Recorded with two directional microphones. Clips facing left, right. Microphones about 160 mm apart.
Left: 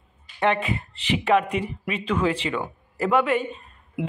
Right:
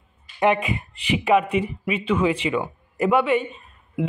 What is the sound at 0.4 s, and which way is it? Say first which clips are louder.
A man's voice: right 3 dB; 10° right (ahead or behind).